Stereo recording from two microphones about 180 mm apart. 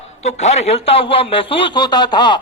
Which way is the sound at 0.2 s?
35° left (ahead or behind).